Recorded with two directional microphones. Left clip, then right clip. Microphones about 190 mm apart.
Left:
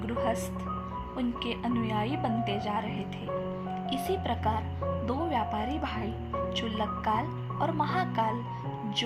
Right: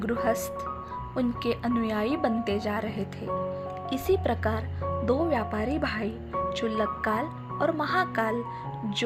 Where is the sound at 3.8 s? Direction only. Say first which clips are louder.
Right 5 dB; 30° right (ahead or behind).